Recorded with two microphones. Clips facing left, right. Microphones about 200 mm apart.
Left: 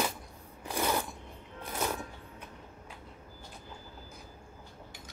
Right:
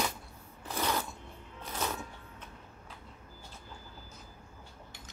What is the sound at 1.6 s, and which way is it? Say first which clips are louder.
Music: left 2 dB; 15° left (ahead or behind).